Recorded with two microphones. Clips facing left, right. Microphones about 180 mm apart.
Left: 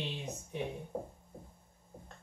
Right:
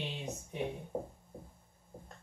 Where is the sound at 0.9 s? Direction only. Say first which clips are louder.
Right 2 dB; 25° right (ahead or behind).